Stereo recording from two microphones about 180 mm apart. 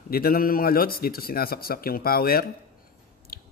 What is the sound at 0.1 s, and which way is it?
A man's voice, 55° left (ahead or behind).